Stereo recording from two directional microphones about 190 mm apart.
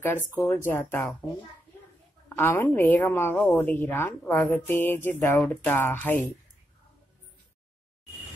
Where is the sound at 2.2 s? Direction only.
10° left (ahead or behind).